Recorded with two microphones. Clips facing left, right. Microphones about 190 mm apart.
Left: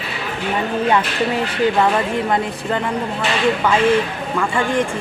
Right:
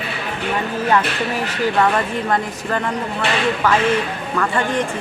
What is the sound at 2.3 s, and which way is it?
Speech, 20° left (ahead or behind).